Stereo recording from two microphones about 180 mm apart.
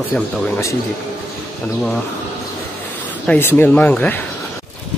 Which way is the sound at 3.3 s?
10° left (ahead or behind).